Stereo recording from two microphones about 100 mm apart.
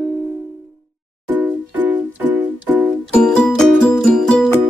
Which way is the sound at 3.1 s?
10° left (ahead or behind).